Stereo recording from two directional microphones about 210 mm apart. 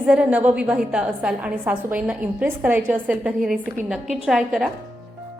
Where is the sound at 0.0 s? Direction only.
5° right (ahead or behind).